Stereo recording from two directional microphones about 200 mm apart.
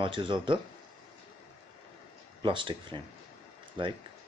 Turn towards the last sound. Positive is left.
turn(degrees=-25)  # may be behind; listen again after turning